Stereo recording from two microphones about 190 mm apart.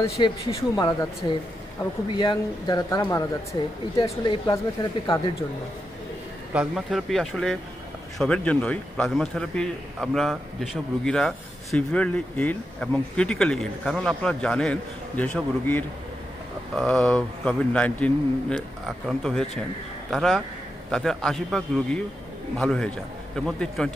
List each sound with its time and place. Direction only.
0.2 s speech: 20° left (ahead or behind)
2.1 s speech: 20° left (ahead or behind)
6.5 s a man's voice: 5° right (ahead or behind)